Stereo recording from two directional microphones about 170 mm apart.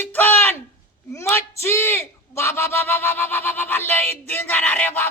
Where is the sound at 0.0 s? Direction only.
10° left (ahead or behind).